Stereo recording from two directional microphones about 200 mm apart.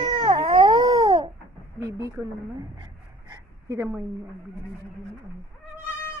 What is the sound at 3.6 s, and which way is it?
Speech, 15° right (ahead or behind).